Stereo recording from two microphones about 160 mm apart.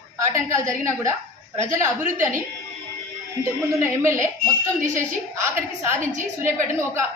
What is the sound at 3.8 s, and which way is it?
A woman's voice, 15° right (ahead or behind).